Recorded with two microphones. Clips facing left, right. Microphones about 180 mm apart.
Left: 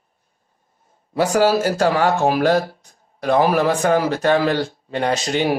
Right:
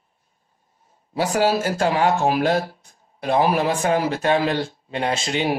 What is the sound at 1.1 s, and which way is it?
Speech, 45° left (ahead or behind).